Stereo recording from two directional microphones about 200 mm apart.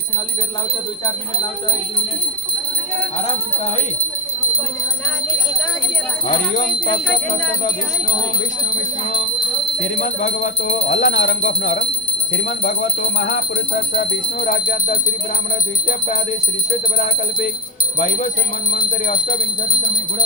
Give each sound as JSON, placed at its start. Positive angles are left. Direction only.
{"t": 10.0, "sound": "speech", "side_deg": 50}
{"t": 15.9, "sound": "bell", "side_deg": 40}
{"t": 18.9, "sound": "speech", "side_deg": 40}